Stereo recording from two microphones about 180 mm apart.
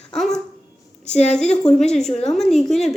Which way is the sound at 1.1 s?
40° left (ahead or behind).